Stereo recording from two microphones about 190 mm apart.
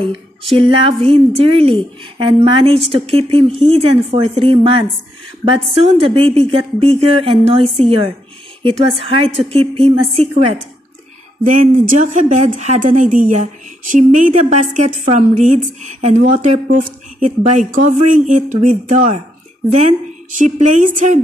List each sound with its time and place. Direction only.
0.6 s a woman's voice: 30° right (ahead or behind)
11.4 s a woman's voice: 40° right (ahead or behind)